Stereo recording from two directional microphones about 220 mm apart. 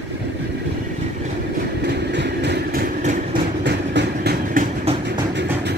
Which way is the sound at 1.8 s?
50° right (ahead or behind).